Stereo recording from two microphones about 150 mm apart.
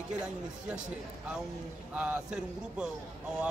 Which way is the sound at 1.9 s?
10° right (ahead or behind).